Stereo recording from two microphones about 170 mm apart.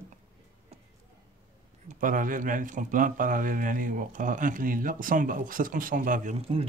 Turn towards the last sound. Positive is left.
turn(degrees=-35)  # may be behind; listen again after turning